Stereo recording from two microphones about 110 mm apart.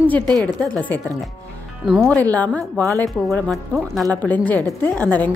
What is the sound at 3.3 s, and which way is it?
Speech, centre (ahead or behind).